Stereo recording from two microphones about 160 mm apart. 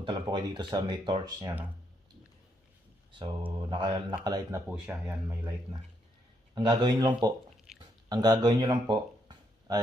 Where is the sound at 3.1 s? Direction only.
30° right (ahead or behind).